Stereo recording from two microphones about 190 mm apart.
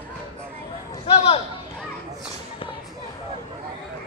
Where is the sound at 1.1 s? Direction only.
30° left (ahead or behind).